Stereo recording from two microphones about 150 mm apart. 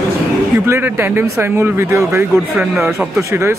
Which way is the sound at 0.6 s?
15° right (ahead or behind).